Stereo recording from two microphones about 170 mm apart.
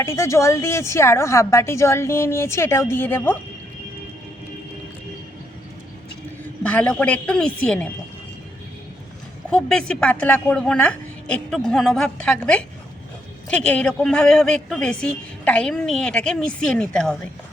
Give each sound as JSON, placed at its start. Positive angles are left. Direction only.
{"t": 0.0, "sound": "a woman's voice", "side_deg": 15}
{"t": 6.6, "sound": "a woman's voice", "side_deg": 5}
{"t": 9.5, "sound": "a woman's voice", "side_deg": 5}